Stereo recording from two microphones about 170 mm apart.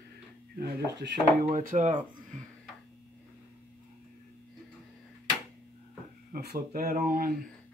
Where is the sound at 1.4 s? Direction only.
50° right (ahead or behind).